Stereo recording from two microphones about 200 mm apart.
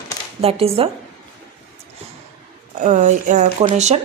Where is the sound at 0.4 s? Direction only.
30° right (ahead or behind).